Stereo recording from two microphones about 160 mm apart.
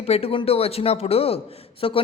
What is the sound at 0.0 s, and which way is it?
A woman's voice, 40° left (ahead or behind).